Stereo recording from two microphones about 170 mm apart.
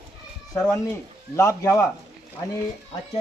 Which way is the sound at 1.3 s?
15° left (ahead or behind).